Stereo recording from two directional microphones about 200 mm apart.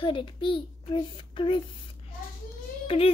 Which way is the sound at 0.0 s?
25° left (ahead or behind).